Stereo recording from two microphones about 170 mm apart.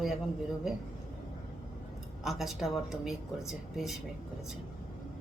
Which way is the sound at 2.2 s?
Centre (ahead or behind).